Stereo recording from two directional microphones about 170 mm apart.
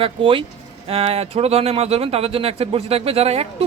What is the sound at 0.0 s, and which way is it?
Speech, 30° right (ahead or behind).